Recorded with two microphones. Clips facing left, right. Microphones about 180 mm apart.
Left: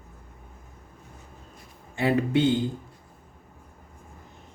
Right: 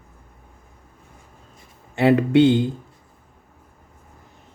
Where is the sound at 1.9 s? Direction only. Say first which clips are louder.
Right 7 dB; 70° right (ahead or behind).